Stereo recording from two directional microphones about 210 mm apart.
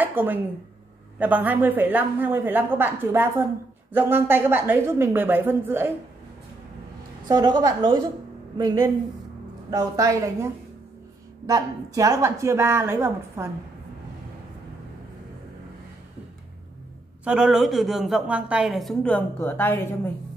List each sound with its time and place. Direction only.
0.0 s a woman's voice: 10° right (ahead or behind)
7.2 s a woman's voice: 20° right (ahead or behind)
17.2 s a woman's voice: 5° right (ahead or behind); by 20.0 s 10° left (ahead or behind)